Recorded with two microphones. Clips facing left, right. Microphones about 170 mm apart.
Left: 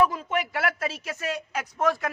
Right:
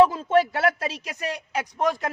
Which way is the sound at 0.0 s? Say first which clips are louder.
Right 6 dB; 30° right (ahead or behind).